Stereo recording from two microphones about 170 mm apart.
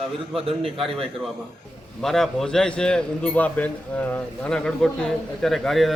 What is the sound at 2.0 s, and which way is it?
A man's voice, centre (ahead or behind).